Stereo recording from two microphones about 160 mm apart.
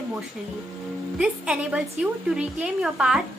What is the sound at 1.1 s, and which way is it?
A woman's voice, 5° right (ahead or behind).